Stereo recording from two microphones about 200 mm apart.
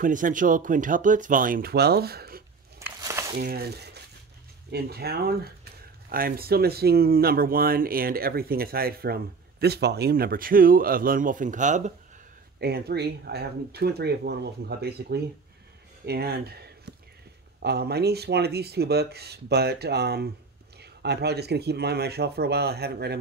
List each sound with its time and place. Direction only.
0.0 s speech: 40° right (ahead or behind)
2.8 s a sound: 15° right (ahead or behind)
3.3 s speech: 50° right (ahead or behind)
12.5 s speech: 55° right (ahead or behind)